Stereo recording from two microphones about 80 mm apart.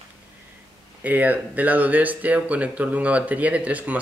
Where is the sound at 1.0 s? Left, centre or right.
Centre.